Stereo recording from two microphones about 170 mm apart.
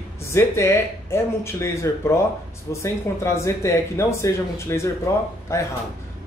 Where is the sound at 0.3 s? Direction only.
15° left (ahead or behind).